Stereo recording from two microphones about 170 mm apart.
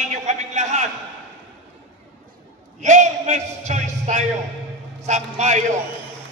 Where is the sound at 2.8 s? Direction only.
45° right (ahead or behind).